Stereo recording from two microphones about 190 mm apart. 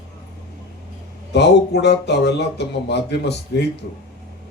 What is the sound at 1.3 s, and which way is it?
A man's voice, 65° left (ahead or behind).